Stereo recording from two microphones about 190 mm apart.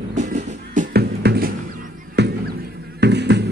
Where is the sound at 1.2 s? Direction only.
55° right (ahead or behind).